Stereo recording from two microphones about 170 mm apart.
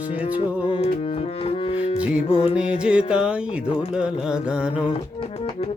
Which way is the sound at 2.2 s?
30° left (ahead or behind).